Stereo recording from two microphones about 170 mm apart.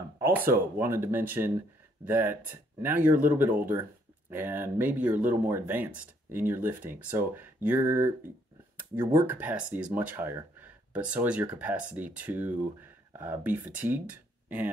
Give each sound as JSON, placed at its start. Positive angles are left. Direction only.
{"t": 0.2, "sound": "speech", "side_deg": -10}
{"t": 9.3, "sound": "speech", "side_deg": -10}